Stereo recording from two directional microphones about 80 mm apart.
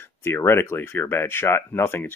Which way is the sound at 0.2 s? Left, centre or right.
Left.